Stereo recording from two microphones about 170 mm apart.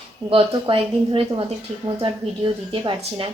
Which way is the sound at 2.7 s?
30° right (ahead or behind).